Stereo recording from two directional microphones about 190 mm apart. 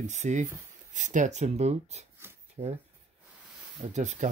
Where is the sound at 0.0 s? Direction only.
40° right (ahead or behind).